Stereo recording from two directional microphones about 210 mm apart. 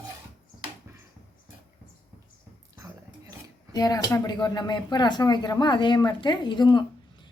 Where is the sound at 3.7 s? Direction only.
20° left (ahead or behind).